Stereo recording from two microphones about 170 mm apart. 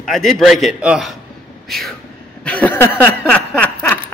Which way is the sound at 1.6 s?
Centre (ahead or behind).